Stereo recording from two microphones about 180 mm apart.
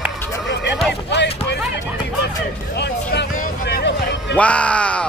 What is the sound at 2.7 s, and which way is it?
Speech, 70° left (ahead or behind).